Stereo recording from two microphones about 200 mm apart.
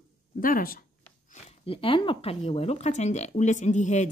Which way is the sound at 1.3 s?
30° left (ahead or behind).